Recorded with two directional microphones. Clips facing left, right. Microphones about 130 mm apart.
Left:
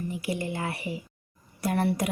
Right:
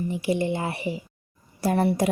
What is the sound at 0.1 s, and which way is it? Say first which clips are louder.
A woman's voice: right 6 dB; 25° right (ahead or behind).